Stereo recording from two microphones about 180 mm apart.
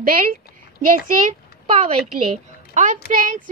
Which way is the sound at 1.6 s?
30° right (ahead or behind).